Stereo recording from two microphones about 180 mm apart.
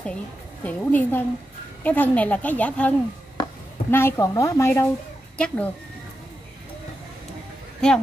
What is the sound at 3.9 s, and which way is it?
Speech, 15° left (ahead or behind).